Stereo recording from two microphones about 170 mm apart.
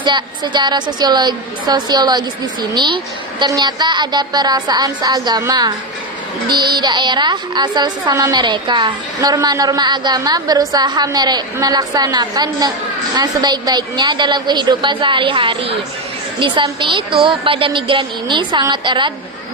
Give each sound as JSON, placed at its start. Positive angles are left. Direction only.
{"t": 0.0, "sound": "a woman's voice", "side_deg": -25}